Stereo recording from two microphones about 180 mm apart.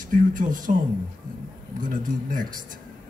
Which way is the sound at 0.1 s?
50° right (ahead or behind).